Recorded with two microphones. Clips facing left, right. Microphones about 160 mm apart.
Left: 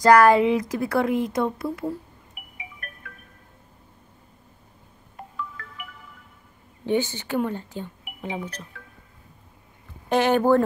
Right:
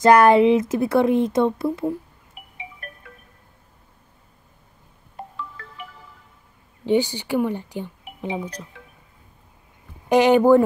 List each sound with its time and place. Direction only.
0.0 s speech: 25° right (ahead or behind)
5.4 s music: 30° right (ahead or behind)
6.9 s a woman's voice: 15° right (ahead or behind)
8.5 s a woman's voice: 10° right (ahead or behind)
10.0 s a woman's voice: 15° right (ahead or behind)